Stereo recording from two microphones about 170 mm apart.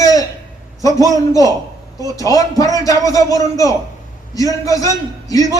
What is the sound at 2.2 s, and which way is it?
A man's voice, 20° left (ahead or behind).